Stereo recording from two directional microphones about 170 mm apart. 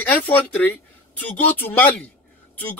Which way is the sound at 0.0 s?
10° left (ahead or behind).